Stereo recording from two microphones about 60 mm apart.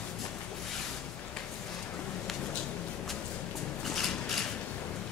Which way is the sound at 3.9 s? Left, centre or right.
Centre.